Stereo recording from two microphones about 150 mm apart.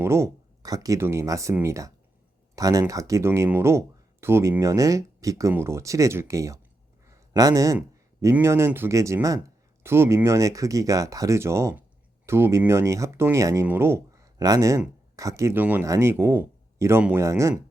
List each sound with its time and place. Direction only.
0.0 s speech: 15° right (ahead or behind)
7.1 s a sound: 25° right (ahead or behind)
8.2 s speech: 15° right (ahead or behind)